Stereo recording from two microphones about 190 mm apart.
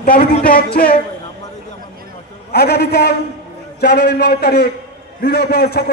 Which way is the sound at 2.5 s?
55° left (ahead or behind).